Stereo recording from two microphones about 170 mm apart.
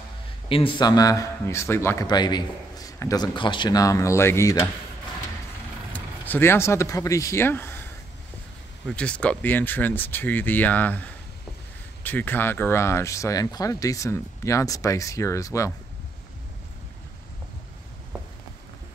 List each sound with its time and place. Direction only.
0.5 s a man's voice: 30° left (ahead or behind)
5.9 s speech: 10° left (ahead or behind)
8.8 s speech: 5° left (ahead or behind)